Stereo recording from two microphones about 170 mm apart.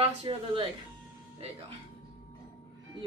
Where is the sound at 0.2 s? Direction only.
30° right (ahead or behind).